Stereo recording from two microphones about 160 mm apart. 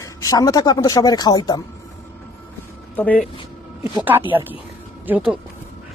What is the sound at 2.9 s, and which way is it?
Speech, 10° left (ahead or behind).